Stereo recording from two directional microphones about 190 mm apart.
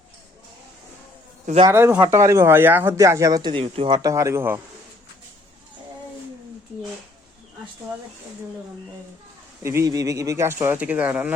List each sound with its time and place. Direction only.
1.6 s speech: 10° right (ahead or behind)
9.6 s speech: 15° right (ahead or behind)